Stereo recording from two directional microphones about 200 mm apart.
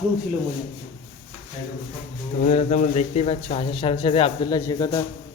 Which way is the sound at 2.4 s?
35° left (ahead or behind).